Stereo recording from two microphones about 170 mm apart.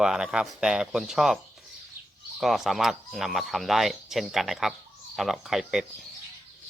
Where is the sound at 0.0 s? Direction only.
5° right (ahead or behind).